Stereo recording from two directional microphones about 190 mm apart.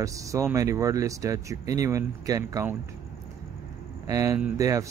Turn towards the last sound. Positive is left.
turn(degrees=-15)  # may be behind; listen again after turning